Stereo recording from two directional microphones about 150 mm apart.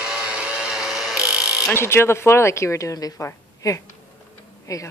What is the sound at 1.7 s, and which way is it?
A woman's voice, 15° left (ahead or behind).